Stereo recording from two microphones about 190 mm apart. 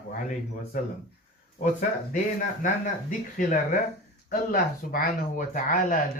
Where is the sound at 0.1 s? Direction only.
45° left (ahead or behind).